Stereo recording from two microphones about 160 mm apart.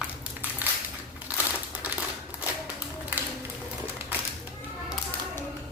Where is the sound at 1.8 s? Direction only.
10° right (ahead or behind).